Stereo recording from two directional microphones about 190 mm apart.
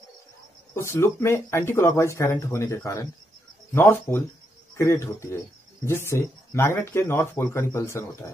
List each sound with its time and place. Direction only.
0.7 s speech: 15° left (ahead or behind)